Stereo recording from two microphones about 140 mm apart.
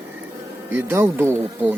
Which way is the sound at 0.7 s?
15° right (ahead or behind).